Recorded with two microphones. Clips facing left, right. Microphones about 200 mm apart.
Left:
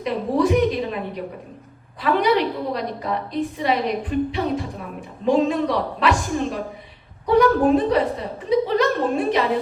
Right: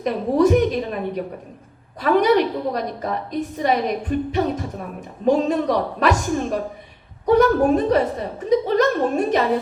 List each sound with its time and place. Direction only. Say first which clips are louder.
0.0 s speech: right 3 dB; 45° right (ahead or behind)